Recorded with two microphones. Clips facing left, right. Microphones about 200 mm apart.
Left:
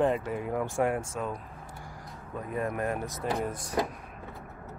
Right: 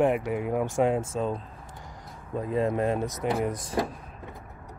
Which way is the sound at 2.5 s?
25° right (ahead or behind).